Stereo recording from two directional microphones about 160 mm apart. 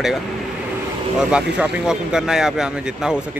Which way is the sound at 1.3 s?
5° right (ahead or behind).